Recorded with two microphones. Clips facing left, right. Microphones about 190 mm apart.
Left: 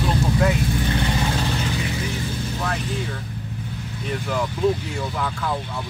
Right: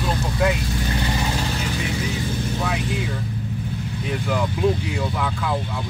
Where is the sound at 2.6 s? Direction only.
5° right (ahead or behind).